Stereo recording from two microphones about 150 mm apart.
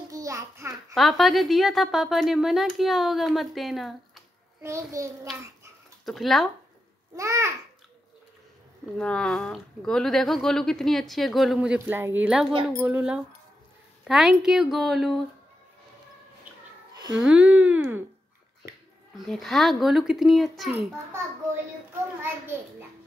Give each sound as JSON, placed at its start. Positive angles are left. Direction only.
{"t": 0.1, "sound": "a sound", "side_deg": -20}
{"t": 0.9, "sound": "speech", "side_deg": 0}
{"t": 4.6, "sound": "a child's voice", "side_deg": -20}
{"t": 6.0, "sound": "speech", "side_deg": 0}
{"t": 7.2, "sound": "a child's voice", "side_deg": -20}
{"t": 8.9, "sound": "speech", "side_deg": 5}
{"t": 16.9, "sound": "a sound", "side_deg": -25}
{"t": 17.2, "sound": "speech", "side_deg": -10}
{"t": 19.1, "sound": "speech", "side_deg": 0}